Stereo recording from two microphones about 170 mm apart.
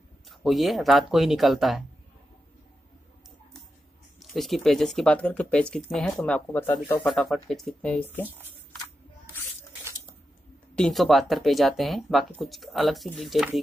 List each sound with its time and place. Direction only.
0.3 s speech: centre (ahead or behind)
4.2 s speech: centre (ahead or behind)
7.1 s speech: centre (ahead or behind)
9.8 s squish: 20° right (ahead or behind)
10.8 s speech: centre (ahead or behind)